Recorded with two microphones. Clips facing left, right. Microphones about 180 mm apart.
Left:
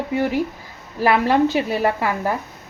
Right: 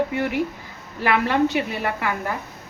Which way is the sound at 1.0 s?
35° left (ahead or behind).